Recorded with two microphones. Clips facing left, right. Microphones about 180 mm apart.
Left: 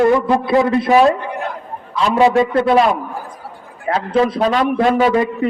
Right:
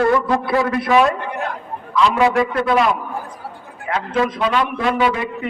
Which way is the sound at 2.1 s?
25° left (ahead or behind).